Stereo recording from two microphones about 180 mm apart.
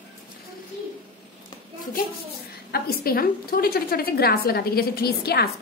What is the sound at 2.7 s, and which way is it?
A woman's voice, 55° left (ahead or behind).